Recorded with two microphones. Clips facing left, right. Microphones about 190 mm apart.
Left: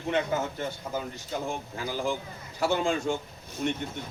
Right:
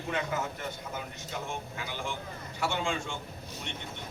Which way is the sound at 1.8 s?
40° left (ahead or behind).